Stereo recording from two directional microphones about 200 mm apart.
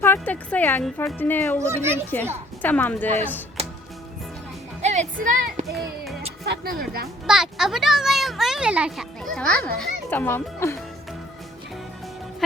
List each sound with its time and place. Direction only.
0.0 s speech: 10° left (ahead or behind)
1.6 s a child's voice: 15° right (ahead or behind)
2.1 s speech: 10° left (ahead or behind)
4.8 s music: 35° right (ahead or behind)
5.6 s music: centre (ahead or behind)
6.4 s music: 50° right (ahead or behind)
7.3 s a child's voice: 5° right (ahead or behind)